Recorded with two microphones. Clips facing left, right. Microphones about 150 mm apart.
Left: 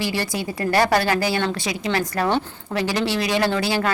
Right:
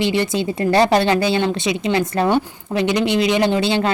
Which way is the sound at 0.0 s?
20° right (ahead or behind).